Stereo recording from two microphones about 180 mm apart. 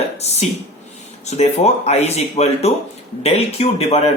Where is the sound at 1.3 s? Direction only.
40° left (ahead or behind).